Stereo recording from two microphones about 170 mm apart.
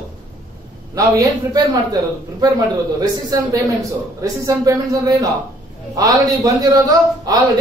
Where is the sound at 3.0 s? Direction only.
20° right (ahead or behind).